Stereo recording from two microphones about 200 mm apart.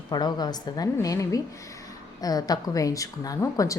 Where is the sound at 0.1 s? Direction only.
20° left (ahead or behind).